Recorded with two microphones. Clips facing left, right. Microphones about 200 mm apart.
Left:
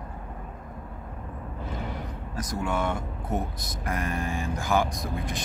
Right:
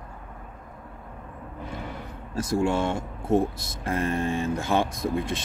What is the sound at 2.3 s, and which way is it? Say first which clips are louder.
Speech: right 6 dB; 30° right (ahead or behind).